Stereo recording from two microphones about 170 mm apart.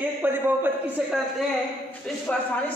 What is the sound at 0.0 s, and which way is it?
A man's voice, 10° right (ahead or behind).